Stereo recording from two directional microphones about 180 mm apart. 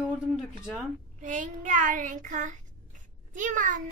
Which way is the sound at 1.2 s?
45° right (ahead or behind).